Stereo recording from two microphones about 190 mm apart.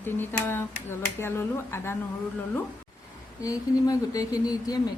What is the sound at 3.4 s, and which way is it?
Speech, 15° left (ahead or behind).